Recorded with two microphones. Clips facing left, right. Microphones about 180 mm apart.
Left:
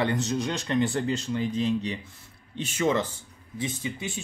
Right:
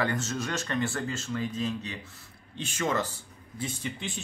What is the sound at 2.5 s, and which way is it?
Speech, 20° left (ahead or behind).